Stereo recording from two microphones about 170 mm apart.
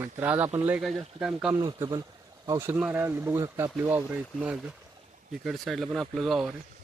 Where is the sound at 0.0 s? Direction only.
10° right (ahead or behind).